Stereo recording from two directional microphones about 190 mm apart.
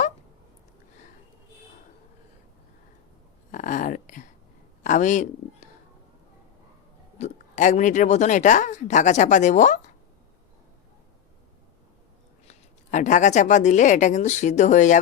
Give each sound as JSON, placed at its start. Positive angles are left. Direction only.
{"t": 3.5, "sound": "a sound", "side_deg": 45}
{"t": 4.8, "sound": "speech", "side_deg": 40}
{"t": 7.2, "sound": "speech", "side_deg": 40}
{"t": 12.5, "sound": "speech", "side_deg": 40}